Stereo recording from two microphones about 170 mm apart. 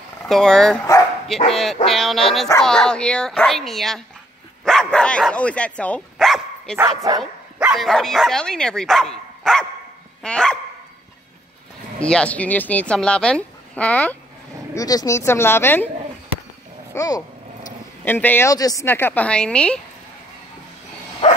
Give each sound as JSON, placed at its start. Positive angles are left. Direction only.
{"t": 0.3, "sound": "speech", "side_deg": 0}
{"t": 4.6, "sound": "dog", "side_deg": 5}
{"t": 6.8, "sound": "speech", "side_deg": -20}
{"t": 7.2, "sound": "speech", "side_deg": -5}
{"t": 9.4, "sound": "dog", "side_deg": 5}
{"t": 10.2, "sound": "speech", "side_deg": 5}
{"t": 12.0, "sound": "speech", "side_deg": 5}
{"t": 14.7, "sound": "speech", "side_deg": 20}
{"t": 16.9, "sound": "a sound", "side_deg": 20}
{"t": 18.0, "sound": "speech", "side_deg": 10}